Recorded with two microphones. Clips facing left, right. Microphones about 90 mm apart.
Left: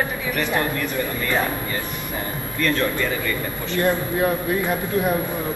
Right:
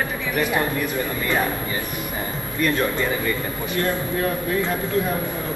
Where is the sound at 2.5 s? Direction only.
15° right (ahead or behind).